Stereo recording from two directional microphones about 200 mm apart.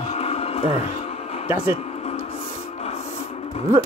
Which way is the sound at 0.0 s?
30° left (ahead or behind).